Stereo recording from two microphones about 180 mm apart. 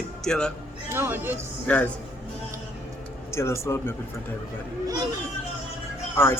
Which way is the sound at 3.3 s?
15° left (ahead or behind).